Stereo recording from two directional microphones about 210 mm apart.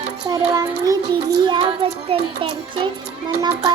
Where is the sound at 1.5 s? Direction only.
20° right (ahead or behind).